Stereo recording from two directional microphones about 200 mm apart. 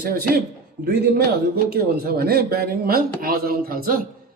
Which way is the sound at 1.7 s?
50° right (ahead or behind).